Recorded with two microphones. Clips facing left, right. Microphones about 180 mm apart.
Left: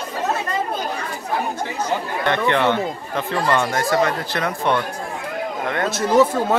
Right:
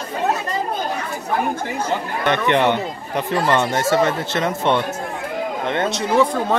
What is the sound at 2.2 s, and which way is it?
Speech, 20° right (ahead or behind).